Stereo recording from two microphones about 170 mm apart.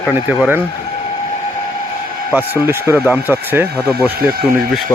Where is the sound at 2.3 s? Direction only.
10° right (ahead or behind).